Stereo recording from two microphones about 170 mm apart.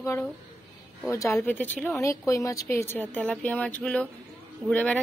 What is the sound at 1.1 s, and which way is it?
A woman's voice, 20° left (ahead or behind).